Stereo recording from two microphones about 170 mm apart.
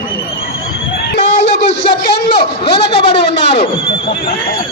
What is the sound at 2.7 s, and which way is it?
Speech, 75° left (ahead or behind).